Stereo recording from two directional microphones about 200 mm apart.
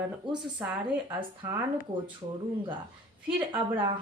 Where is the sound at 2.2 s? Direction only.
25° right (ahead or behind).